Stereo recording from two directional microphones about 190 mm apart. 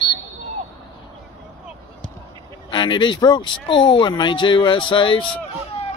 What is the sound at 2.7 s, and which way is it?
Speech, 25° left (ahead or behind).